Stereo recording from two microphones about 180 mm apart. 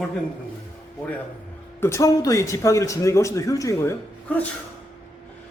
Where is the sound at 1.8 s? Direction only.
15° left (ahead or behind).